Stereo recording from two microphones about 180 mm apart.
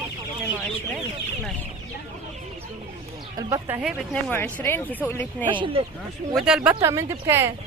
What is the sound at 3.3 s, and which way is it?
Speech, 15° right (ahead or behind).